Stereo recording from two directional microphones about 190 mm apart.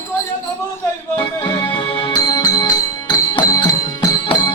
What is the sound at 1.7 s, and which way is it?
Music, 25° left (ahead or behind).